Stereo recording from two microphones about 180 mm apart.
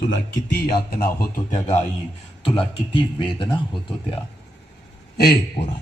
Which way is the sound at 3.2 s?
25° left (ahead or behind).